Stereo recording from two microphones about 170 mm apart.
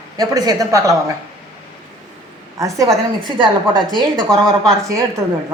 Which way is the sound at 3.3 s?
25° right (ahead or behind).